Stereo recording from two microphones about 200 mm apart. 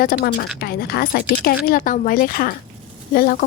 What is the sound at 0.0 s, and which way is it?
Speech, 45° left (ahead or behind).